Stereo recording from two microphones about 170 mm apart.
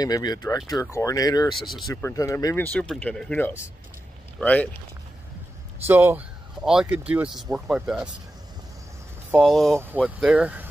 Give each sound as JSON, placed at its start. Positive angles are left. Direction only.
{"t": 0.0, "sound": "speech", "side_deg": 20}
{"t": 5.9, "sound": "speech", "side_deg": -10}
{"t": 9.4, "sound": "speech", "side_deg": 0}
{"t": 9.8, "sound": "speech", "side_deg": -10}